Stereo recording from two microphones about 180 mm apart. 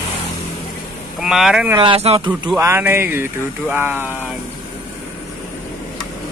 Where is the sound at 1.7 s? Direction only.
30° right (ahead or behind).